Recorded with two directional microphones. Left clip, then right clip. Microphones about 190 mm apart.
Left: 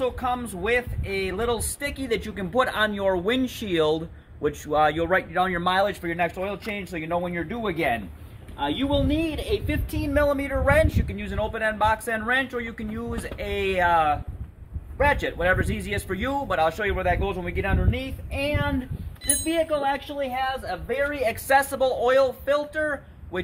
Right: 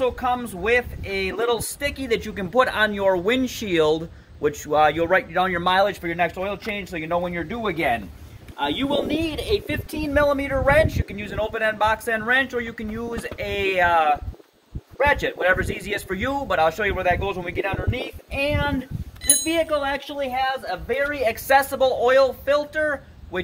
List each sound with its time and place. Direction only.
0.0 s speech: 10° right (ahead or behind); by 3.3 s 35° right (ahead or behind)
4.6 s speech: 25° right (ahead or behind); by 7.7 s centre (ahead or behind)
7.7 s speech: 15° left (ahead or behind)
10.0 s speech: 5° left (ahead or behind)
11.1 s speech: 15° right (ahead or behind)
15.2 s speech: 15° right (ahead or behind)